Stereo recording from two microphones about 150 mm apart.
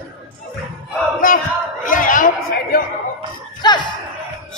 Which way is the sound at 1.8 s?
65° left (ahead or behind).